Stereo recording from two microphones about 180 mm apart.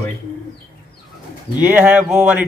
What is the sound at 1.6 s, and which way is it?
Speech, 10° right (ahead or behind).